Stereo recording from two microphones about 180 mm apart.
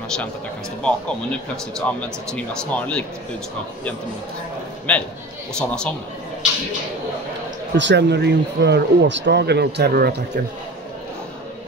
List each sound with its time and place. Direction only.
0.8 s speech: 5° left (ahead or behind)
4.9 s speech: 5° left (ahead or behind)
7.7 s speech: 80° right; by 10.4 s 65° right (ahead or behind)